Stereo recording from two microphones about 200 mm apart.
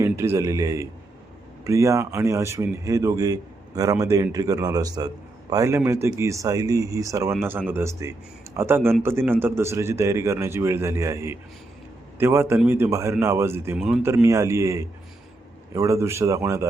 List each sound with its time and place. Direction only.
0.0 s speech: 15° right (ahead or behind)
13.7 s speech: centre (ahead or behind)
14.0 s speech: 15° right (ahead or behind)